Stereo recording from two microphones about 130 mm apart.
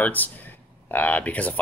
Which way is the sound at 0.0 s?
15° left (ahead or behind).